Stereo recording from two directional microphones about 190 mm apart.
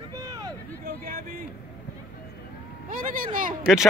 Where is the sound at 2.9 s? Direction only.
45° right (ahead or behind).